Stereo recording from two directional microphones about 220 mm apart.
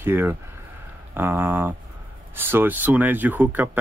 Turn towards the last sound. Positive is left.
turn(degrees=-10)  # may be behind; listen again after turning